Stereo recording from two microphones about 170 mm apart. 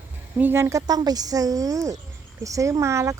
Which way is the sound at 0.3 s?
10° right (ahead or behind).